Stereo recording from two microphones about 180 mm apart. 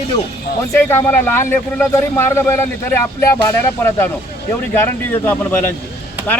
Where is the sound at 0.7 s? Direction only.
10° left (ahead or behind).